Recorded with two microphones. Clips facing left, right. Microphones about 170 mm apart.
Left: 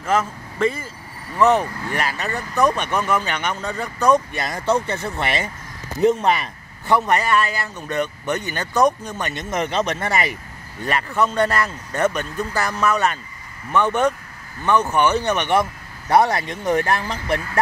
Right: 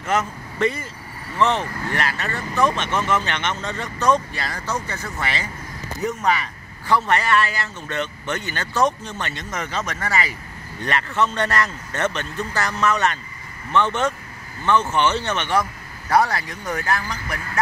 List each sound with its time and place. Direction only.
1.3 s speech: 10° left (ahead or behind)
4.4 s speech: 20° left (ahead or behind)
6.9 s speech: 15° left (ahead or behind)
10.8 s speech: 10° left (ahead or behind); by 17.4 s 25° left (ahead or behind)